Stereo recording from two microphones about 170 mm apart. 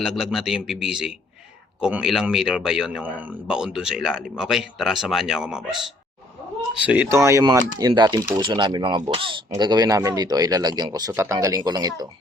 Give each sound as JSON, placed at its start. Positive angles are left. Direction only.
{"t": 0.0, "sound": "speech", "side_deg": 0}
{"t": 6.8, "sound": "speech", "side_deg": -10}